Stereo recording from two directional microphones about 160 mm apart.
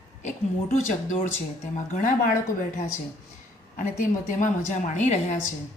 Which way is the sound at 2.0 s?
55° left (ahead or behind).